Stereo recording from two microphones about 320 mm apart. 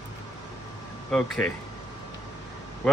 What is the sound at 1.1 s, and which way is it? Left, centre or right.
Speech, centre.